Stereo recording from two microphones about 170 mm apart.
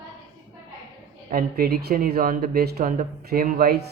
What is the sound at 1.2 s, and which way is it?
Speech, 60° right (ahead or behind).